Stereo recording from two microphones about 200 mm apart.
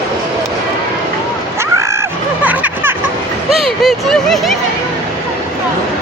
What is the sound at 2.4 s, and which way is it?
Music, 10° right (ahead or behind).